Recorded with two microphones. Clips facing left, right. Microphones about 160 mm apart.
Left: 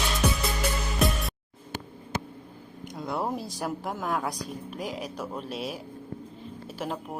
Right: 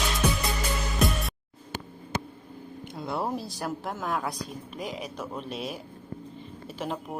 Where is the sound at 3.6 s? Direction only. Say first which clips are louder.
Left 2 dB; 5° left (ahead or behind).